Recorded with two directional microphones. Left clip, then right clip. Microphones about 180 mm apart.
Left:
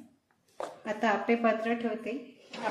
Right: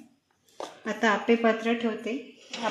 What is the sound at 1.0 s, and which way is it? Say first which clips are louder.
A woman's voice: right 4 dB; 40° right (ahead or behind).